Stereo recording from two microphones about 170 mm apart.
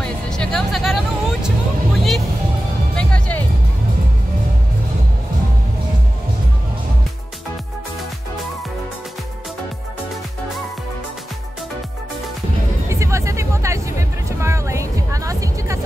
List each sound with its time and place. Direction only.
0.0 s music: 5° left (ahead or behind)
12.8 s music: 15° right (ahead or behind)